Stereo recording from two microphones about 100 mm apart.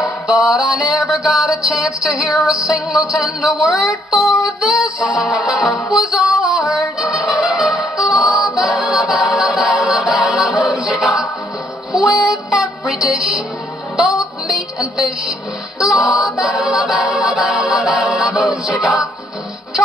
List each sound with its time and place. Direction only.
0.0 s a capella: 5° right (ahead or behind)
4.2 s music: 5° right (ahead or behind)
5.4 s a capella: centre (ahead or behind)
6.1 s music: 5° right (ahead or behind)
8.5 s a capella: 5° right (ahead or behind)
11.9 s music: 5° right (ahead or behind)
14.1 s music: 35° left (ahead or behind)
15.8 s a capella: 5° right (ahead or behind)